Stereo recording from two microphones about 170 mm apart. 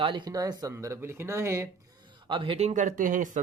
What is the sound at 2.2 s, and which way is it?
Speech, 30° right (ahead or behind).